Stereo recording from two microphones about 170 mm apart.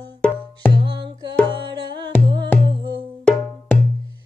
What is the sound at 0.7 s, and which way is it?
Music, 30° right (ahead or behind).